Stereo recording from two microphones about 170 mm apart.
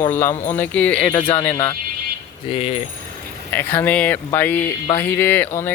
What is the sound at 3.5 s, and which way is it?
Chime, 10° left (ahead or behind).